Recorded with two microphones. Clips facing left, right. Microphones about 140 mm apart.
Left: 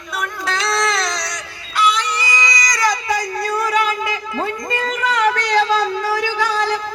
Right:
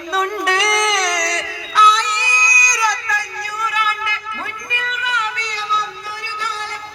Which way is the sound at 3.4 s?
55° left (ahead or behind).